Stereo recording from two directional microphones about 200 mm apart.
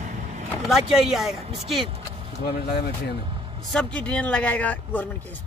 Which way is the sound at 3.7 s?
5° left (ahead or behind).